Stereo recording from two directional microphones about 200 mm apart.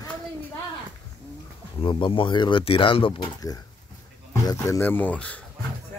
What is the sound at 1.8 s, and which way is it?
Speech, 25° left (ahead or behind).